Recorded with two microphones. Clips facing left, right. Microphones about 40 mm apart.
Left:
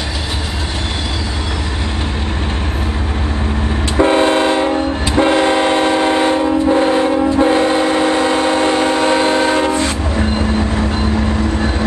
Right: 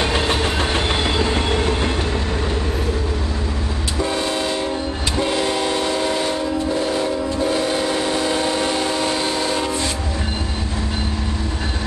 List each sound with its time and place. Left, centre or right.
4.0 s train: left